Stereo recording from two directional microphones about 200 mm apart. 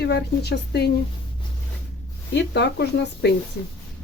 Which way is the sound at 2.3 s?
60° left (ahead or behind).